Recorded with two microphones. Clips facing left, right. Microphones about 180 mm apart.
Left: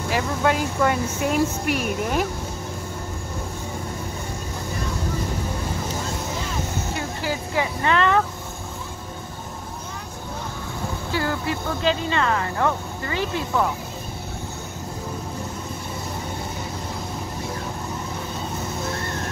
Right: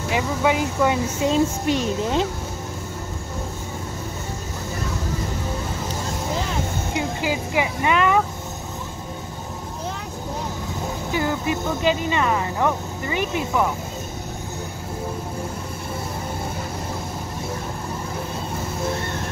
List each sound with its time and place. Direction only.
0.4 s a woman's voice: 10° right (ahead or behind)
6.9 s a sound: 15° right (ahead or behind)
11.1 s speech: 15° right (ahead or behind)